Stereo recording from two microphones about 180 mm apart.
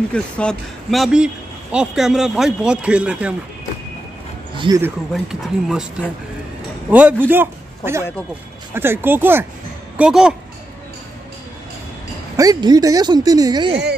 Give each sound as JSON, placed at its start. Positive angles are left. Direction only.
{"t": 0.1, "sound": "speech", "side_deg": 5}
{"t": 4.6, "sound": "speech", "side_deg": -20}
{"t": 5.1, "sound": "speech", "side_deg": 0}
{"t": 6.9, "sound": "a man's voice", "side_deg": -10}
{"t": 12.4, "sound": "speech", "side_deg": -20}